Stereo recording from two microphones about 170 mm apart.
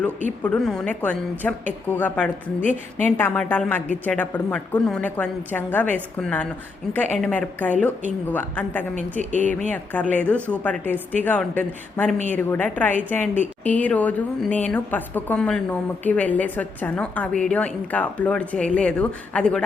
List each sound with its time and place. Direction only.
0.4 s a woman's voice: 5° left (ahead or behind)
9.3 s speech: 45° right (ahead or behind)
9.6 s a woman's voice: 10° left (ahead or behind)